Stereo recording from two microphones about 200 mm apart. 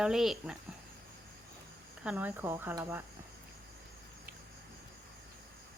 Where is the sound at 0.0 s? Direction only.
Centre (ahead or behind).